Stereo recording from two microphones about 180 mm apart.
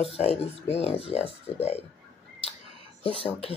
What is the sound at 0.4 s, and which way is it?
Speech, 35° left (ahead or behind).